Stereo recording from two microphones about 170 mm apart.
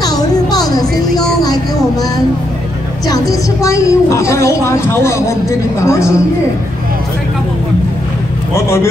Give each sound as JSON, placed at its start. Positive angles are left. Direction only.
{"t": 0.0, "sound": "music", "side_deg": 20}
{"t": 3.1, "sound": "a woman's voice", "side_deg": 20}
{"t": 8.5, "sound": "a woman's voice", "side_deg": 15}